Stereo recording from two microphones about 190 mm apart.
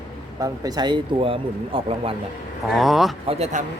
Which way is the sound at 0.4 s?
20° right (ahead or behind).